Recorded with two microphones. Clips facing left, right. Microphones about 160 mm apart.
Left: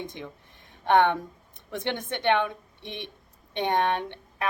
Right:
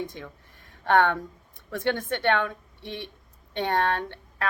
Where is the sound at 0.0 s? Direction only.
20° left (ahead or behind).